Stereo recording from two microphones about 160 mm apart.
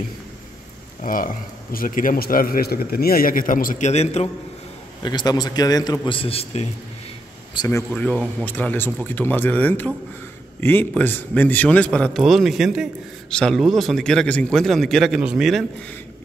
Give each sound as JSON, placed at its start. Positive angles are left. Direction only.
{"t": 1.0, "sound": "a man's voice", "side_deg": 60}
{"t": 5.0, "sound": "a man's voice", "side_deg": 25}
{"t": 7.5, "sound": "a man's voice", "side_deg": 20}
{"t": 7.9, "sound": "a man's voice", "side_deg": 10}